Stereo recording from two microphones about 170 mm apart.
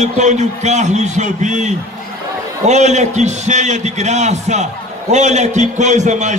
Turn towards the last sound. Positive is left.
turn(degrees=-45)  # may be behind; listen again after turning